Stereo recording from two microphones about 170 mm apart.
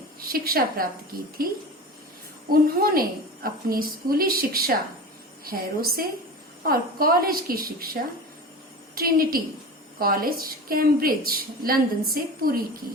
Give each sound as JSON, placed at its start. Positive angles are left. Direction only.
{"t": 0.3, "sound": "a woman's voice", "side_deg": -60}
{"t": 2.5, "sound": "a woman's voice", "side_deg": -60}
{"t": 9.0, "sound": "a woman's voice", "side_deg": -60}